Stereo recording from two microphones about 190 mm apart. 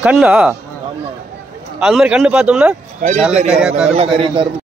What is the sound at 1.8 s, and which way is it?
Speech, centre (ahead or behind).